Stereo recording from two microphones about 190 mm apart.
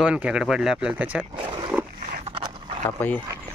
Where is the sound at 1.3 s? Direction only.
25° right (ahead or behind).